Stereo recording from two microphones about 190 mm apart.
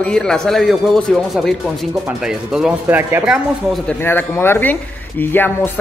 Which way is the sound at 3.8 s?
10° left (ahead or behind).